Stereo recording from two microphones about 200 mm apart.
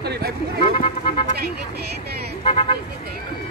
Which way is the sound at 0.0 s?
55° right (ahead or behind).